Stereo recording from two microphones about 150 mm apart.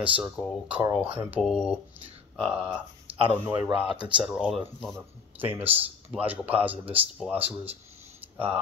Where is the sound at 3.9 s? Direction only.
30° right (ahead or behind).